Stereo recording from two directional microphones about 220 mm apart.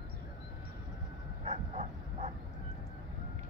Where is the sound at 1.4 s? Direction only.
30° right (ahead or behind).